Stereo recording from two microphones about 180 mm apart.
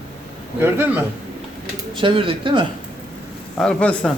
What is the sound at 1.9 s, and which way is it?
Speech, 30° right (ahead or behind).